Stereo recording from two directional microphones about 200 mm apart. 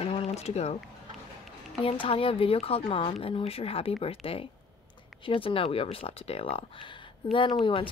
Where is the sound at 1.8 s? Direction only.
25° left (ahead or behind).